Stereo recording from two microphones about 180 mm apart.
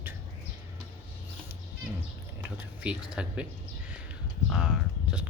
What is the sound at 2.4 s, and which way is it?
Speech, 5° right (ahead or behind).